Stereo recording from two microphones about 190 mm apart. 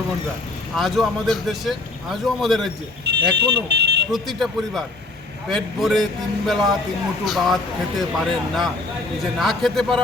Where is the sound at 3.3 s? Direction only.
60° right (ahead or behind).